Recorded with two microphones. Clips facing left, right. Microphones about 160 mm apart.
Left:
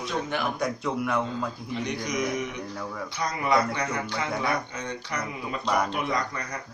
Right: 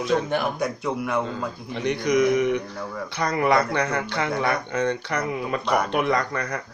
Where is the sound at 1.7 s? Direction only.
60° right (ahead or behind).